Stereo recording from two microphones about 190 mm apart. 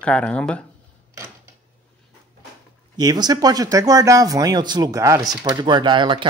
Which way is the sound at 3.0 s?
20° right (ahead or behind).